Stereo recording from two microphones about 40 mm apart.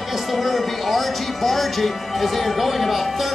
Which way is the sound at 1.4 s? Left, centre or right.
Centre.